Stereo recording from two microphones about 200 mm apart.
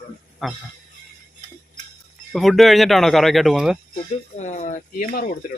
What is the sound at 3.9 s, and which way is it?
Speech, 35° left (ahead or behind).